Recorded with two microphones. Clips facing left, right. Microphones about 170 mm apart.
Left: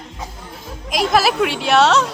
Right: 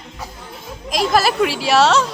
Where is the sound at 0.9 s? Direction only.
Centre (ahead or behind).